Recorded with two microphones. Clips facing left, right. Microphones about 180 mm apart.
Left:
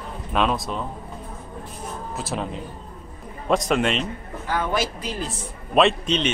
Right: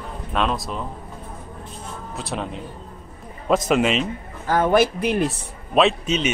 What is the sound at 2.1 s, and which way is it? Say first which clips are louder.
Speech: right 1 dB; centre (ahead or behind).